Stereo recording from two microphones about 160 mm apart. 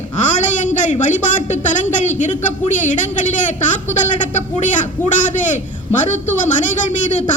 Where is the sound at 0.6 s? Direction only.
50° left (ahead or behind).